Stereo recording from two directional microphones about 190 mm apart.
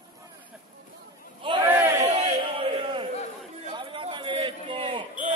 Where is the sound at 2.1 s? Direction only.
30° right (ahead or behind).